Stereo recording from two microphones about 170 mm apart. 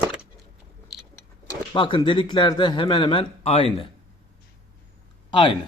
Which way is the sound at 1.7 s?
30° left (ahead or behind).